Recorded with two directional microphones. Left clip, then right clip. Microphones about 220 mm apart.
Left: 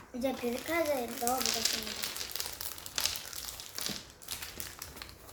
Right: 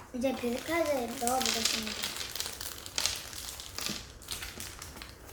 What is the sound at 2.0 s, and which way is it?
Crumpling, 10° left (ahead or behind).